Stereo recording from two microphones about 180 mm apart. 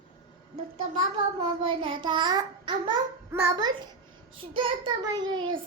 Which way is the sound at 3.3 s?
15° right (ahead or behind).